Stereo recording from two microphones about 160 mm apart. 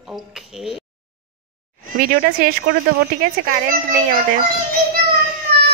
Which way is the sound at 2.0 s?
65° right (ahead or behind).